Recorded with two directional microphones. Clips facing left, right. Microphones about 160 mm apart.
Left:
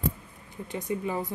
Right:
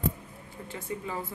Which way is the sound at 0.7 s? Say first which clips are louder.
Left 5 dB; 15° left (ahead or behind).